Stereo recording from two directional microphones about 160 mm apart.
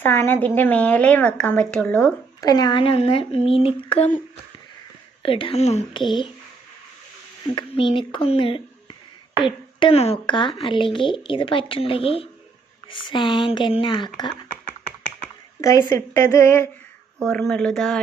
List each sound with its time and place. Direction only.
0.0 s speech: 15° left (ahead or behind)
2.4 s speech: 25° left (ahead or behind)
5.2 s speech: 35° left (ahead or behind)
5.9 s a sound: 30° left (ahead or behind)
7.5 s speech: 30° left (ahead or behind)
15.9 s speech: 20° left (ahead or behind)
17.2 s speech: 5° left (ahead or behind)